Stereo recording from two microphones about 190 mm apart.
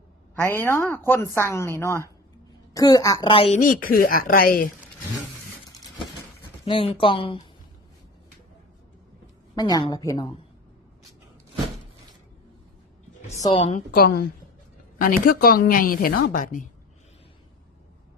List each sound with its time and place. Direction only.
0.3 s a woman's voice: 15° left (ahead or behind); by 3.6 s 30° left (ahead or behind)
3.6 s a woman's voice: 50° left (ahead or behind)
6.7 s a woman's voice: 30° left (ahead or behind)
9.6 s a woman's voice: 20° left (ahead or behind)
13.4 s a woman's voice: 30° left (ahead or behind)
13.7 s a woman's voice: 50° left (ahead or behind)